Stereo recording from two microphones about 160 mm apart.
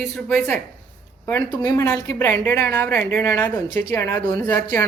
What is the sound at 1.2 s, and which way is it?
Speech, 15° left (ahead or behind).